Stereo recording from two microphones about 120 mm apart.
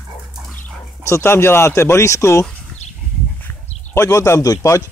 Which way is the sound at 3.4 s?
20° left (ahead or behind).